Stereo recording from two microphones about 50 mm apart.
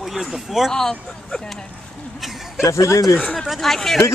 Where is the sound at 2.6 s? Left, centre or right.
Left.